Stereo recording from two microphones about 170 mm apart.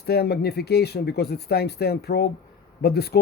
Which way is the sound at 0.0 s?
70° left (ahead or behind).